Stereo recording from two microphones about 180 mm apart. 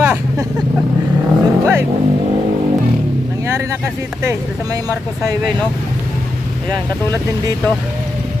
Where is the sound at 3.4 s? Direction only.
15° right (ahead or behind).